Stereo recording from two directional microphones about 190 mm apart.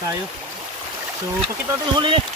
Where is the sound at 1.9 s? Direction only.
25° right (ahead or behind).